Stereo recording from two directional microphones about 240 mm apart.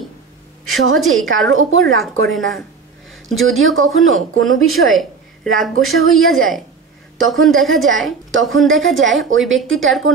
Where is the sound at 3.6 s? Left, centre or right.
Right.